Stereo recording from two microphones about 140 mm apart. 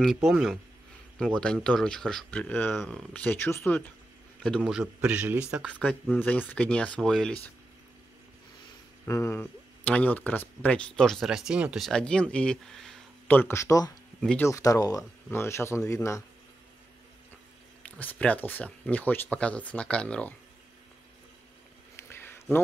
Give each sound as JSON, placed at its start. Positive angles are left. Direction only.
{"t": 0.0, "sound": "a man's voice", "side_deg": 0}
{"t": 4.6, "sound": "a man's voice", "side_deg": -5}
{"t": 5.8, "sound": "speech", "side_deg": 10}
{"t": 9.0, "sound": "speech", "side_deg": 20}
{"t": 13.4, "sound": "speech", "side_deg": 20}
{"t": 14.2, "sound": "speech", "side_deg": 10}
{"t": 14.5, "sound": "speech", "side_deg": 25}
{"t": 17.8, "sound": "speech", "side_deg": 10}
{"t": 21.9, "sound": "a sound", "side_deg": 15}